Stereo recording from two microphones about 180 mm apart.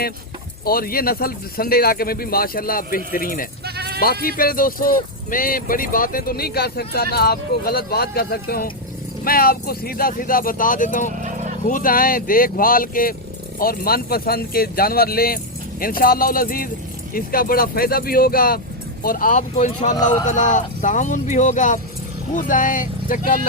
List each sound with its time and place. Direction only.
0.6 s speech: 55° left (ahead or behind)
3.8 s bleat: 60° right (ahead or behind)
4.0 s speech: 55° left (ahead or behind)
11.2 s a sound: 45° right (ahead or behind)
11.7 s speech: 50° left (ahead or behind)